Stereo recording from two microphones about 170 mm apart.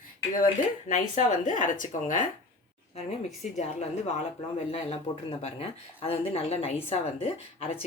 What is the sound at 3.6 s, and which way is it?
Speech, 40° left (ahead or behind).